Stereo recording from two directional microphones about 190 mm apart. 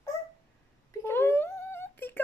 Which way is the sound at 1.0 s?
10° left (ahead or behind).